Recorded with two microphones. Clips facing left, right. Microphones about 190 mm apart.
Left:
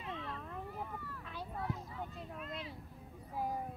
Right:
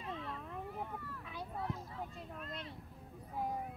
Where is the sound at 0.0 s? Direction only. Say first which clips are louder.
Even; centre (ahead or behind).